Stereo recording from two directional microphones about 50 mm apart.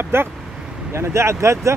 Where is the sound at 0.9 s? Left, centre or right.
Right.